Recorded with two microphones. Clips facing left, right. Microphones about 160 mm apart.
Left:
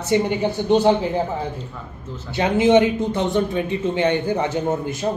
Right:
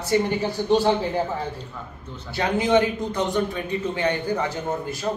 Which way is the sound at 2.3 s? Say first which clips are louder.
Left 5 dB; 20° left (ahead or behind).